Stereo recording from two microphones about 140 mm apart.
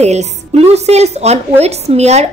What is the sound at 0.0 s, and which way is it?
Speech, 50° right (ahead or behind).